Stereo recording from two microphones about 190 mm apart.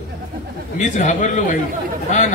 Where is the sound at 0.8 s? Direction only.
40° left (ahead or behind).